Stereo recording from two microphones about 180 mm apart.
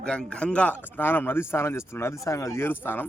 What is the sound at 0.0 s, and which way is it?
Speech, 5° left (ahead or behind).